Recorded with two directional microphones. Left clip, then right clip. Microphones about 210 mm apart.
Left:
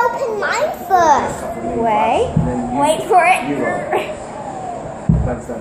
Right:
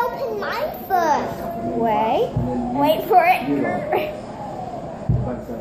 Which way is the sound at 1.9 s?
Centre (ahead or behind).